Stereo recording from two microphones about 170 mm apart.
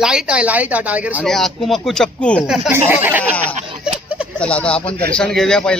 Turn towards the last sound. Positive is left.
turn(degrees=5)  # may be behind; listen again after turning